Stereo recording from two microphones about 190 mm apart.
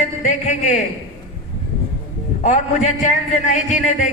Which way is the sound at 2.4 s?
35° left (ahead or behind).